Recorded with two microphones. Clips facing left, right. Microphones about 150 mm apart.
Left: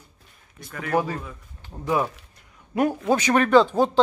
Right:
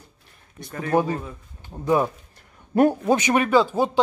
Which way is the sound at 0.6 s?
30° right (ahead or behind).